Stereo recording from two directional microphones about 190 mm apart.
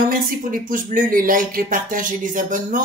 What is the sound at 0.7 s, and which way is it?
Speech, 45° right (ahead or behind).